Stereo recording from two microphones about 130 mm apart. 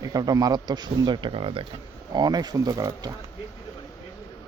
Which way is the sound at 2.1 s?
35° right (ahead or behind).